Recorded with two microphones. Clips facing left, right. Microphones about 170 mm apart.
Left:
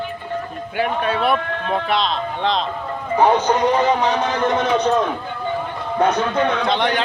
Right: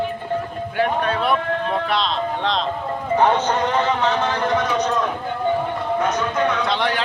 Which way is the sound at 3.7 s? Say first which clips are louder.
Left 2 dB; 15° left (ahead or behind).